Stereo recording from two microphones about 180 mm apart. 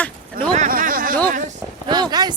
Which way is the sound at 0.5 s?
45° right (ahead or behind).